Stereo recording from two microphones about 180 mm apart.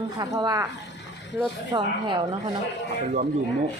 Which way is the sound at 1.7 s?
25° right (ahead or behind).